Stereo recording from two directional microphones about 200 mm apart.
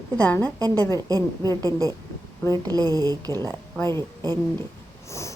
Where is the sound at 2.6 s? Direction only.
20° right (ahead or behind).